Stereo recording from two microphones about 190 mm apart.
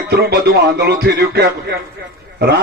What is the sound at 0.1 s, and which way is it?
Music, 60° right (ahead or behind).